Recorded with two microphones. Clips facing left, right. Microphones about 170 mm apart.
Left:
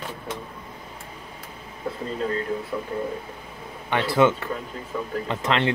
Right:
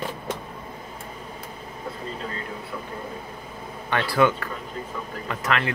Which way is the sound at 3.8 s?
20° left (ahead or behind).